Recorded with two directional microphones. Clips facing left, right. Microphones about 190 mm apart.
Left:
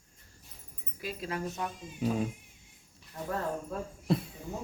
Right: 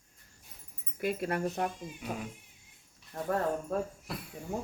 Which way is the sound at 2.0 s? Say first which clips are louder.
Left 8 dB; 30° left (ahead or behind).